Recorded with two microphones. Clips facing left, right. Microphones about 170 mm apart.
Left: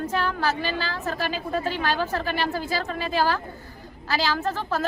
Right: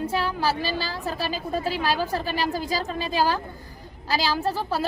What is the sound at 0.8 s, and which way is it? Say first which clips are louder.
A woman's voice: left 1 dB; 10° right (ahead or behind).